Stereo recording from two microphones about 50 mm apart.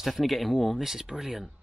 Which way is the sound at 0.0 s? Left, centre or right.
Centre.